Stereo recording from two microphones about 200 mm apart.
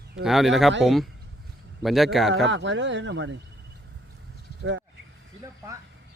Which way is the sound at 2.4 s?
65° right (ahead or behind).